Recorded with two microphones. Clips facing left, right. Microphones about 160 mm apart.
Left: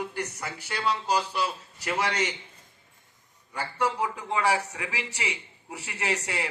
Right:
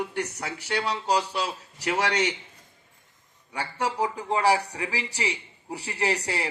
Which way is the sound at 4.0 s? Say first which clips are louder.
Right 3 dB; 35° right (ahead or behind).